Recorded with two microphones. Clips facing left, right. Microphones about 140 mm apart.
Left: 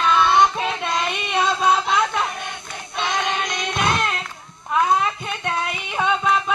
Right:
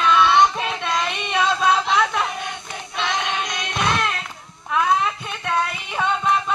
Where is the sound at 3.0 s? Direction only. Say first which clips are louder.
Left 1 dB; 5° left (ahead or behind).